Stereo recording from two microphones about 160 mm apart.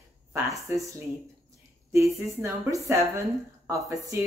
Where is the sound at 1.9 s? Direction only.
20° right (ahead or behind).